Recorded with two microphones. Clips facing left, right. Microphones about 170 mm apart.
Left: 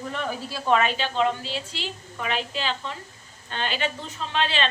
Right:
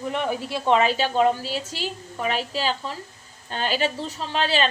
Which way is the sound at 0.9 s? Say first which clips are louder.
Right 4 dB; 40° right (ahead or behind).